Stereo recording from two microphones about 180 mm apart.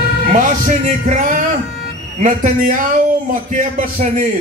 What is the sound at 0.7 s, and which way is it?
A man's voice, 45° right (ahead or behind).